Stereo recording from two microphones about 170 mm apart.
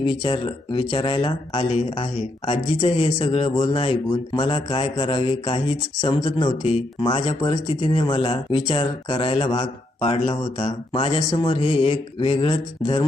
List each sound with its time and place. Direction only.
0.0 s speech: 30° left (ahead or behind)
6.0 s speech: 25° left (ahead or behind)
6.6 s speech: 35° left (ahead or behind)